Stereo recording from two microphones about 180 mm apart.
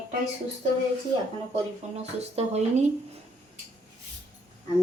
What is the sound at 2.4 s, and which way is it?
Speech, 35° right (ahead or behind).